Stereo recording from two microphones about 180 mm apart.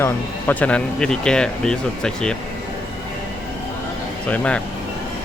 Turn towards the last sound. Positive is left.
turn(degrees=5)  # may be behind; listen again after turning